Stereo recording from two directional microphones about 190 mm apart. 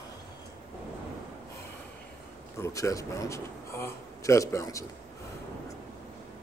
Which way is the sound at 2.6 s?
15° left (ahead or behind).